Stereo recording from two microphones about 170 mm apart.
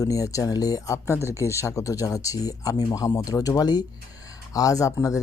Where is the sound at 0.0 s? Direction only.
20° left (ahead or behind).